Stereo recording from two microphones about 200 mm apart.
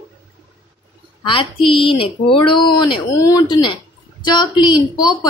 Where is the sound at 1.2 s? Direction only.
25° left (ahead or behind).